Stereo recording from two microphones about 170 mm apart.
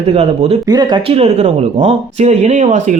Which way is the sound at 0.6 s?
25° right (ahead or behind).